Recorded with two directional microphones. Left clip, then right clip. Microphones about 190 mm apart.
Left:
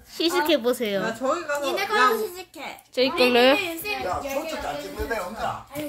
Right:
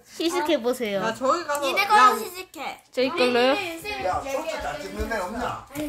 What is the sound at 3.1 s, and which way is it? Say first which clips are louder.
Speech: left 3 dB; 10° left (ahead or behind).